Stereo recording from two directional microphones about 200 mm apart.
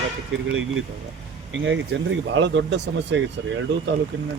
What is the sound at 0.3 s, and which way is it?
Speech, 75° right (ahead or behind).